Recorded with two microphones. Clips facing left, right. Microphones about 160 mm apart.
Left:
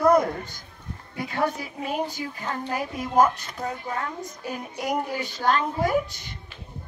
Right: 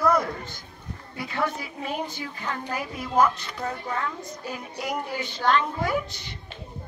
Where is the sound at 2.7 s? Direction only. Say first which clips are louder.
Left 3 dB; 45° left (ahead or behind).